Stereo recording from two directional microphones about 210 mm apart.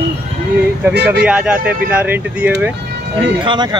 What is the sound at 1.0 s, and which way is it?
Speech, 5° right (ahead or behind).